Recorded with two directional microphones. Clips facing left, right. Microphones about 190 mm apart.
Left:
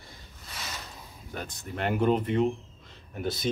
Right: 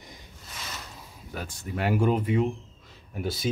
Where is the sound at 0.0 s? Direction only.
15° right (ahead or behind).